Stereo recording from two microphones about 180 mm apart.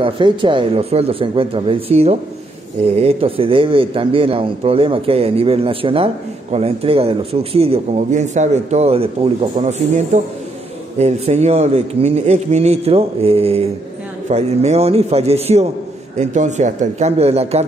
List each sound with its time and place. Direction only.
0.0 s speech: 25° right (ahead or behind)